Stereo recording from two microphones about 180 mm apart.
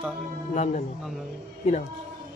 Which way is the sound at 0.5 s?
40° left (ahead or behind).